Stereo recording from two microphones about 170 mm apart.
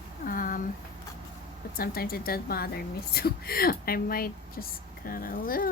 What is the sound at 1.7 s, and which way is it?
Speech, 60° left (ahead or behind).